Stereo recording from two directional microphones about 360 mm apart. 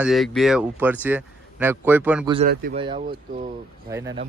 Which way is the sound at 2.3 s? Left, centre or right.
Right.